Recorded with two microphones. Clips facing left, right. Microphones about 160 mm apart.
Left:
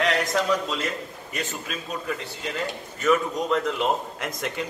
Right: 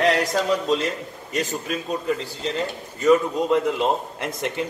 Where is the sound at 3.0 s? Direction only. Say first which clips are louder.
Right 5 dB; 25° right (ahead or behind).